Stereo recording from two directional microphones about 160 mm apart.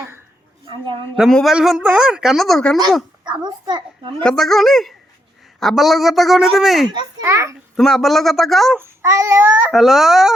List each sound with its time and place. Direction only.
1.1 s speech: centre (ahead or behind)
3.2 s a child's voice: 30° right (ahead or behind)
4.2 s speech: 5° left (ahead or behind)
6.8 s a child's voice: 30° right (ahead or behind)
7.3 s a child's voice: 20° right (ahead or behind)
7.8 s speech: centre (ahead or behind)
8.8 s child singing: 15° right (ahead or behind)
9.7 s speech: centre (ahead or behind)